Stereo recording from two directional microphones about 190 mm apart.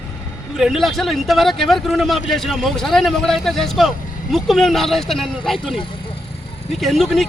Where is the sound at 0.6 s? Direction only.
Centre (ahead or behind).